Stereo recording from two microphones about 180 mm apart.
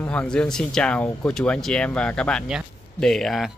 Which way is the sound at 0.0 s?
5° left (ahead or behind).